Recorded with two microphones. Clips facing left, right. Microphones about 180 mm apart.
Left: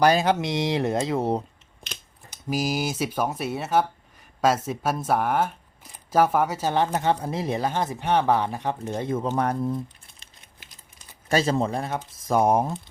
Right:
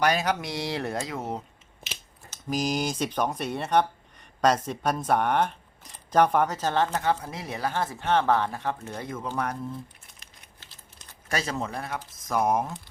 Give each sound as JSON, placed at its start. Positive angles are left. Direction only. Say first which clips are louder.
{"t": 0.0, "sound": "speech", "louder": "left 5 dB", "side_deg": 30}
{"t": 2.3, "sound": "speech", "louder": "left 1 dB", "side_deg": 5}
{"t": 7.0, "sound": "speech", "louder": "left 4 dB", "side_deg": 30}
{"t": 10.6, "sound": "typing", "louder": "even", "side_deg": 15}
{"t": 11.3, "sound": "speech", "louder": "left 8 dB", "side_deg": 30}